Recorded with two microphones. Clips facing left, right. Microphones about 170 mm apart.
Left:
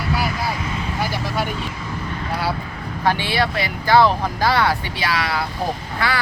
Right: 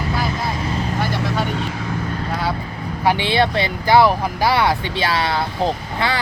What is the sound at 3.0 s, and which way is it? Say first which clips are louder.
Speech: right 3 dB; 15° right (ahead or behind).